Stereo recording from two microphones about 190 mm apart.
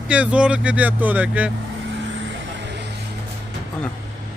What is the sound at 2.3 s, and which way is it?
Vehicle, 65° right (ahead or behind).